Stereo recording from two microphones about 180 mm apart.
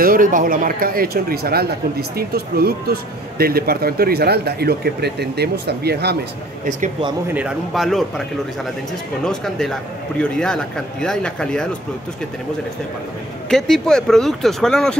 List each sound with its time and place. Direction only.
0.0 s speech: 50° right (ahead or behind)
7.3 s speech: 5° right (ahead or behind)
9.2 s speech: 5° left (ahead or behind)
13.5 s speech: centre (ahead or behind)